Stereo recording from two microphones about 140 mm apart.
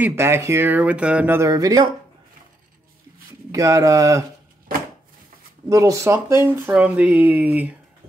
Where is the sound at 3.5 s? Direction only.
25° right (ahead or behind).